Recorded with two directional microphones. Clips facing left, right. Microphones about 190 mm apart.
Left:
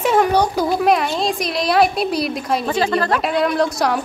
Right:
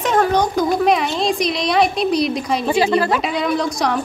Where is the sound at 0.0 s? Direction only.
10° left (ahead or behind).